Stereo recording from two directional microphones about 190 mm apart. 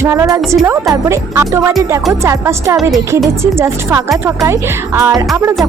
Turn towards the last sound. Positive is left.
turn(degrees=-15)  # may be behind; listen again after turning